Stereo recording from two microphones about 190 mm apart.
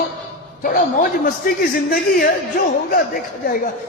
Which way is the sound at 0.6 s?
45° left (ahead or behind).